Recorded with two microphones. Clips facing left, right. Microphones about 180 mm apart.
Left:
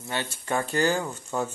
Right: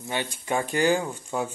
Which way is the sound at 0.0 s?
15° right (ahead or behind).